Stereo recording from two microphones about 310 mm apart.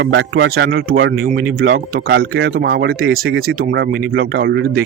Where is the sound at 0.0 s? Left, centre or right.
Right.